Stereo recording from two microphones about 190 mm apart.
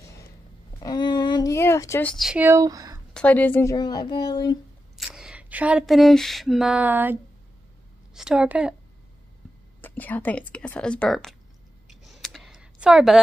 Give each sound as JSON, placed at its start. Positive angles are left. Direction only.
{"t": 0.7, "sound": "a sound", "side_deg": 20}
{"t": 3.1, "sound": "a child's voice", "side_deg": 5}
{"t": 4.9, "sound": "a sound", "side_deg": 0}
{"t": 8.1, "sound": "a woman's voice", "side_deg": -5}
{"t": 9.8, "sound": "a woman's voice", "side_deg": 10}
{"t": 11.9, "sound": "computer keyboard", "side_deg": 0}